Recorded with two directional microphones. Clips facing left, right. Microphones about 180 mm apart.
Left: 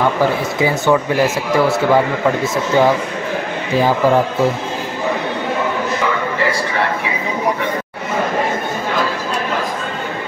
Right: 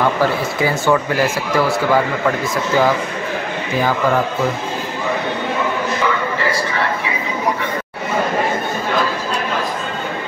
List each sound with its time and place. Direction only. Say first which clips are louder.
0.2 s speech: left 1 dB; 20° left (ahead or behind)